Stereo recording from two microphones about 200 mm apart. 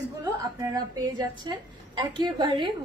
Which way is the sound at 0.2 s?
20° right (ahead or behind).